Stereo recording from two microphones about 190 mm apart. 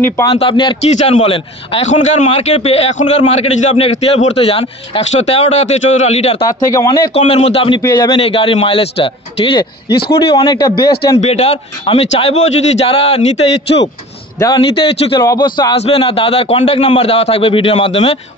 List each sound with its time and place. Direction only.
0.0 s a man's voice: 20° left (ahead or behind)
6.4 s speech: 15° left (ahead or behind)
7.2 s a man's voice: 35° left (ahead or behind)
11.1 s a man's voice: 35° left (ahead or behind)
14.4 s a man's voice: 25° left (ahead or behind)